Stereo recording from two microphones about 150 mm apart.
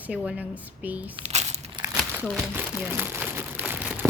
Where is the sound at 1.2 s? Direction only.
50° right (ahead or behind).